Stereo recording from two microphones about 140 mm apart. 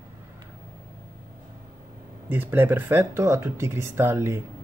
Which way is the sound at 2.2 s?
15° right (ahead or behind).